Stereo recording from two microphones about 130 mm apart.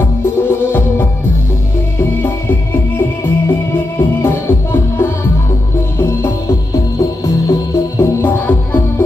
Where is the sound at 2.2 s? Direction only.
15° left (ahead or behind).